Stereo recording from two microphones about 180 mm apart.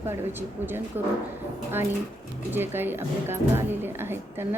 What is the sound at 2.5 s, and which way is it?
A woman's voice, 10° right (ahead or behind).